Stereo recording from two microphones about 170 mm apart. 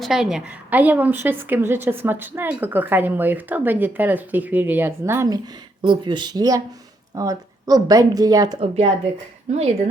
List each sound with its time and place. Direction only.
0.0 s a woman's voice: centre (ahead or behind)
5.8 s speech: 30° right (ahead or behind)
8.5 s speech: 35° right (ahead or behind)